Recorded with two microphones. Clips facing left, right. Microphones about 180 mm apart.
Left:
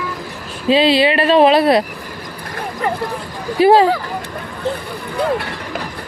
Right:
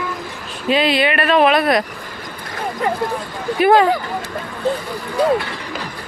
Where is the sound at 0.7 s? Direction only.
30° left (ahead or behind).